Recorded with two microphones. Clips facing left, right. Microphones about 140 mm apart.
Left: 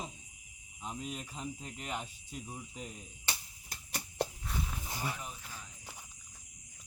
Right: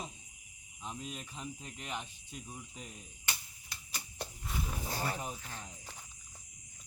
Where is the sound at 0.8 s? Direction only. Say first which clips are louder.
Left 2 dB; 5° left (ahead or behind).